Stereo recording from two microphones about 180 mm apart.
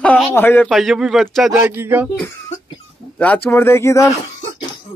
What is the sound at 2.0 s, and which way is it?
Speech, 5° left (ahead or behind).